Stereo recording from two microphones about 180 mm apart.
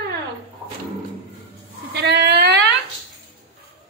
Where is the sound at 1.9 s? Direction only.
65° right (ahead or behind).